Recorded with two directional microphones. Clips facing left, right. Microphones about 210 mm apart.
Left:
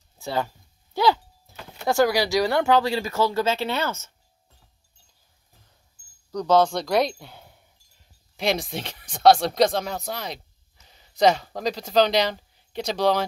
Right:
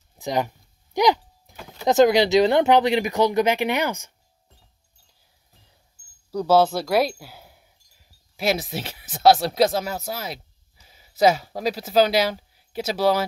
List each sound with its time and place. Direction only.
0.1 s speech: 15° right (ahead or behind)
0.9 s a sound: 15° right (ahead or behind)
1.9 s speech: 20° right (ahead or behind)
6.3 s speech: 5° right (ahead or behind)